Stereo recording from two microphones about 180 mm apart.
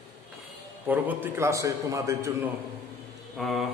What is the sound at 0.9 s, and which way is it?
A man's voice, 10° right (ahead or behind).